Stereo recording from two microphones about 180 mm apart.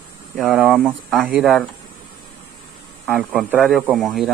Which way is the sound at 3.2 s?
5° right (ahead or behind).